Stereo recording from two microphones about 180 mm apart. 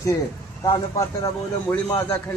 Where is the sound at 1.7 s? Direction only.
5° left (ahead or behind).